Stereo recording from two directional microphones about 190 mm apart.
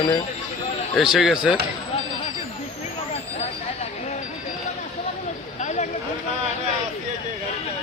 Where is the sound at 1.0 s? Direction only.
Centre (ahead or behind).